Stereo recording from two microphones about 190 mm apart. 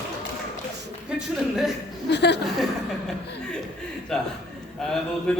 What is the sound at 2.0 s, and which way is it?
Speech, 60° left (ahead or behind).